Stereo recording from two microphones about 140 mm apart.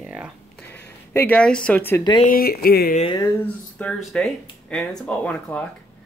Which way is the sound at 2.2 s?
90° left.